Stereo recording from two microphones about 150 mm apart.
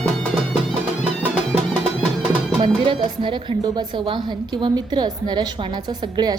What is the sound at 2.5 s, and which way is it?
Speech, 35° right (ahead or behind).